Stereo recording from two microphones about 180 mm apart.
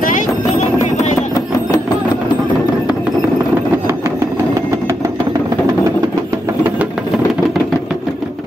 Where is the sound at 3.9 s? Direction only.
15° right (ahead or behind).